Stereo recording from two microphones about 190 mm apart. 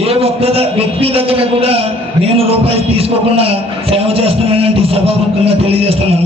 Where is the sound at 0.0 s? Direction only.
30° right (ahead or behind).